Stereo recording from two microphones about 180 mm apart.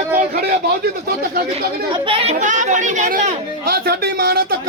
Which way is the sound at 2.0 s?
35° right (ahead or behind).